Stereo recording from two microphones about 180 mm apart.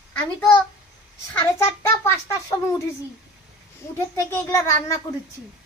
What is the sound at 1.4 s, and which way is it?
Speech, 15° left (ahead or behind).